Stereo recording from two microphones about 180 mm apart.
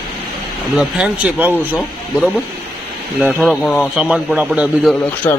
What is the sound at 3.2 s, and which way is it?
Speech, 5° right (ahead or behind).